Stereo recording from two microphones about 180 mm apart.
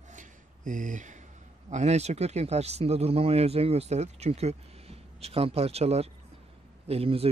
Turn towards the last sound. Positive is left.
turn(degrees=-35)  # may be behind; listen again after turning